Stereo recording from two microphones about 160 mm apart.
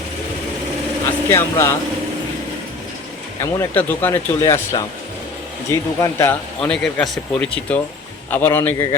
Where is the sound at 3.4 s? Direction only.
20° left (ahead or behind).